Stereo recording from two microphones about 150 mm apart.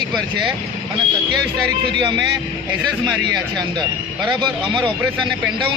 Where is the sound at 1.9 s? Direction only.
30° right (ahead or behind).